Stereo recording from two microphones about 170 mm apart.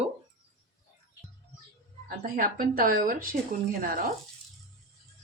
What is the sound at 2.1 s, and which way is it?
Speech, 60° right (ahead or behind).